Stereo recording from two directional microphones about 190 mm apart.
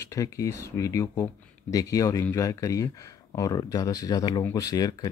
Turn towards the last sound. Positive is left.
turn(degrees=20)  # may be behind; listen again after turning